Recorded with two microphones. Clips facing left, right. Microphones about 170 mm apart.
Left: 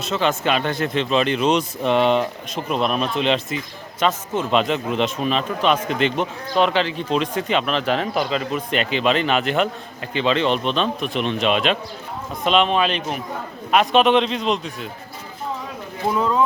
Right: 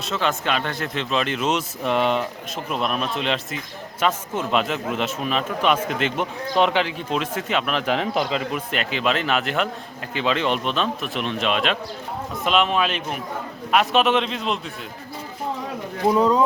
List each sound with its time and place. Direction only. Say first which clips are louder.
0.0 s a man's voice: left 3 dB; centre (ahead or behind)
6.5 s speech: left 1 dB; 20° right (ahead or behind)
8.7 s a man's voice: left 4 dB; centre (ahead or behind)
16.1 s speech: right 3 dB; 35° right (ahead or behind)